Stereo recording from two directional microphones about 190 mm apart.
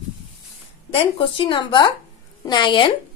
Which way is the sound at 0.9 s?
30° left (ahead or behind).